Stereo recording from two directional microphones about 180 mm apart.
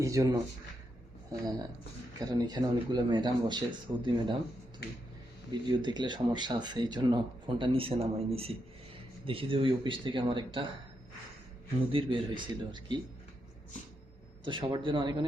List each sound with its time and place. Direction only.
0.0 s speech: 20° right (ahead or behind)
2.1 s speech: 20° right (ahead or behind)
5.5 s speech: 25° right (ahead or behind)
11.9 s speech: 30° right (ahead or behind)
14.4 s speech: 25° right (ahead or behind)